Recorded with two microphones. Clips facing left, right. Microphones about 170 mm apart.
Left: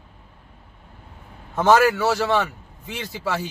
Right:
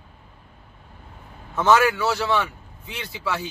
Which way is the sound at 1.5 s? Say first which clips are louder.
Left 2 dB; 40° left (ahead or behind).